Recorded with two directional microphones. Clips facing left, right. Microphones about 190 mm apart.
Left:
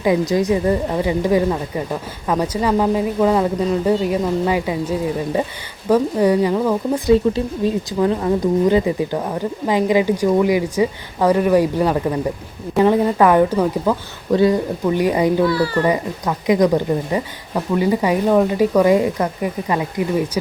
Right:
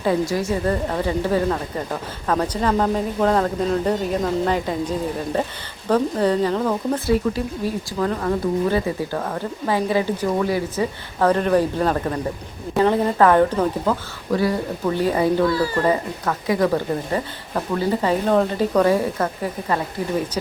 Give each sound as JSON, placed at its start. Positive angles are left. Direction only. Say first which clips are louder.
{"t": 0.0, "sound": "a woman's voice", "louder": "left 4 dB", "side_deg": 15}
{"t": 7.1, "sound": "a woman's voice", "louder": "left 7 dB", "side_deg": 25}